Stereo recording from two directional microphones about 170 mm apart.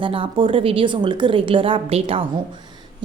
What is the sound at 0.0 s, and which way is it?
A woman's voice, 30° right (ahead or behind).